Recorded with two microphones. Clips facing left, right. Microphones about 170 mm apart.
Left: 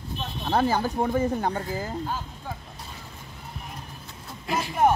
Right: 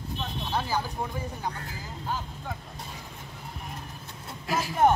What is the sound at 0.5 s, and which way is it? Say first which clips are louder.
Speech: left 8 dB; 60° left (ahead or behind).